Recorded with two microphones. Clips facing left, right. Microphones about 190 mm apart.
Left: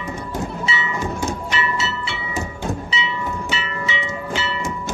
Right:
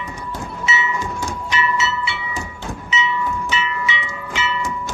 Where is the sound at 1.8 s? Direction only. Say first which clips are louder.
Right 3 dB; 40° left (ahead or behind).